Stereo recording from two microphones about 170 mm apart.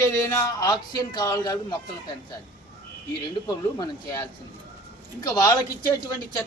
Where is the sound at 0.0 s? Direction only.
15° left (ahead or behind).